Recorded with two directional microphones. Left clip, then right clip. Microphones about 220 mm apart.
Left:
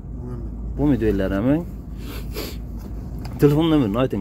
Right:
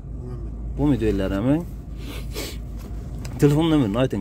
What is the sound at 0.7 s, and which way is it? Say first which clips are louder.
Speech: left 2 dB; 10° right (ahead or behind).